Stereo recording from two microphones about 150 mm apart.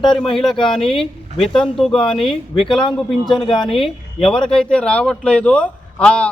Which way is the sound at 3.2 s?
35° left (ahead or behind).